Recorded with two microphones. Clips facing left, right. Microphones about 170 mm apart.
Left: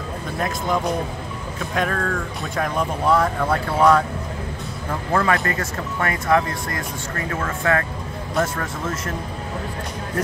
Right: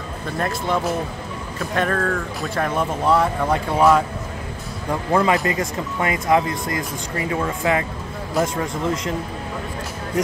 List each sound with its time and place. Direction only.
0.4 s speech: centre (ahead or behind)
5.1 s speech: 20° right (ahead or behind)